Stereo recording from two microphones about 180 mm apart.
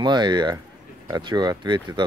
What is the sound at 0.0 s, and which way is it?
Speech, 25° right (ahead or behind).